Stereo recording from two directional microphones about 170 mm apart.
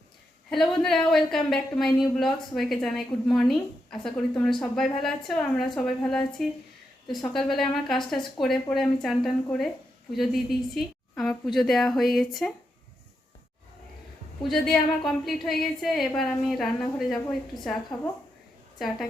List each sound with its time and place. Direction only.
0.5 s speech: centre (ahead or behind)
14.4 s speech: centre (ahead or behind)